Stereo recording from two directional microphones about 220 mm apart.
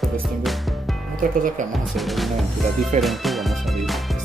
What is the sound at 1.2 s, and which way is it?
Speech, 35° right (ahead or behind).